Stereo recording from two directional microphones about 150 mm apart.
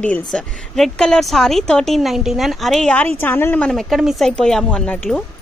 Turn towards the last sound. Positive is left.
turn(degrees=10)  # may be behind; listen again after turning